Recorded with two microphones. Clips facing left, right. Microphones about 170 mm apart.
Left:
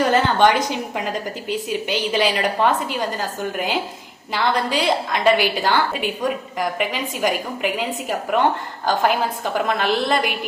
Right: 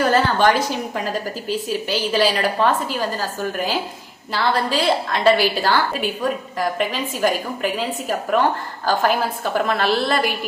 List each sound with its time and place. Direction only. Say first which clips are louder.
0.1 s a woman's voice: even; 20° left (ahead or behind)